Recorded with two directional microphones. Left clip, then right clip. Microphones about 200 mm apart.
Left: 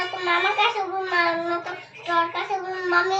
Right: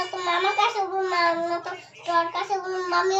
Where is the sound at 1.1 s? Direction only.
20° right (ahead or behind).